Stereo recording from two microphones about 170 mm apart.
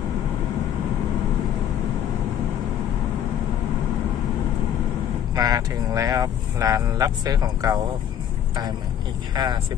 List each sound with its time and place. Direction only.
5.3 s speech: 20° right (ahead or behind)
9.3 s speech: 25° right (ahead or behind)